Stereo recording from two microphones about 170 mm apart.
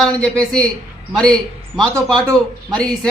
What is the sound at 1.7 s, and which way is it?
Speech, 20° right (ahead or behind).